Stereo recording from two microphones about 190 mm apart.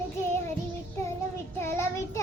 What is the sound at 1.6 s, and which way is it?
Child singing, 10° left (ahead or behind).